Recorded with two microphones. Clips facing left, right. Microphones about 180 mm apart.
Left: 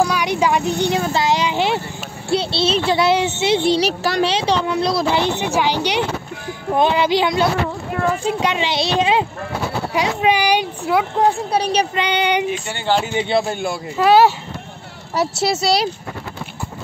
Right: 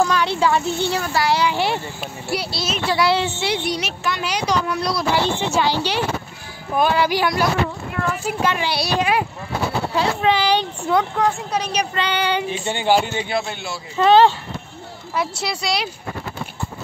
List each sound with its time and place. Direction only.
0.0 s a child's voice: 15° left (ahead or behind)
11.1 s speech: 30° left (ahead or behind)
11.9 s speech: 20° left (ahead or behind)
12.4 s speech: 20° right (ahead or behind)
13.3 s speech: 40° left (ahead or behind)
13.9 s speech: 10° left (ahead or behind)
15.1 s speech: 40° left (ahead or behind)